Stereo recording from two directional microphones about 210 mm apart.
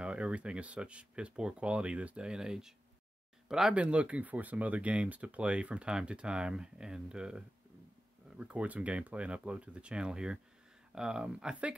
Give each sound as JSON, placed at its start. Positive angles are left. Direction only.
{"t": 0.0, "sound": "speech", "side_deg": -5}